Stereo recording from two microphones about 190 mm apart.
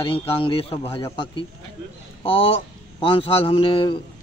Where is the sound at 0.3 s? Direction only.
30° left (ahead or behind).